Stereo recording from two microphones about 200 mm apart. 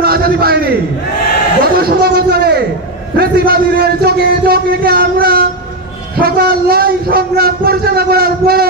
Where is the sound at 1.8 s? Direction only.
50° right (ahead or behind).